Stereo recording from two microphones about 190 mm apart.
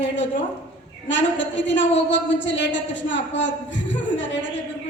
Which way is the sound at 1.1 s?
75° left (ahead or behind).